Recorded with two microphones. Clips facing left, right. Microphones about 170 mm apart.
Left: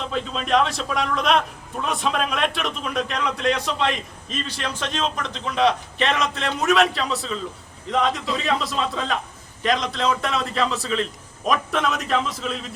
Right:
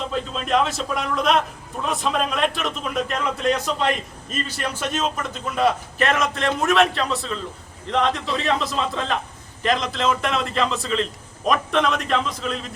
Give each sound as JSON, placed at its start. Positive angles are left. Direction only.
{"t": 0.1, "sound": "a man's voice", "side_deg": 0}